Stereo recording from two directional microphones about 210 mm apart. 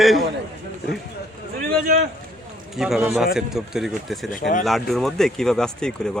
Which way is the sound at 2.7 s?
Centre (ahead or behind).